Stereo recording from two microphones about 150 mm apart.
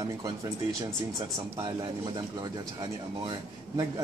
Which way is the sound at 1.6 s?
25° right (ahead or behind).